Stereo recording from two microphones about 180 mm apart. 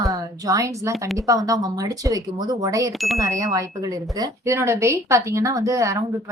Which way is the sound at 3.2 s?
15° right (ahead or behind).